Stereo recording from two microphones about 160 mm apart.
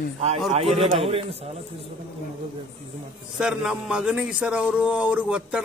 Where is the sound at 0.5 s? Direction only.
35° right (ahead or behind).